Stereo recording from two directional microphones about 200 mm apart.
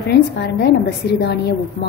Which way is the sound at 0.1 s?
55° left (ahead or behind).